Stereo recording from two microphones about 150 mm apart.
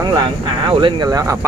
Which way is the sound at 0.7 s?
35° right (ahead or behind).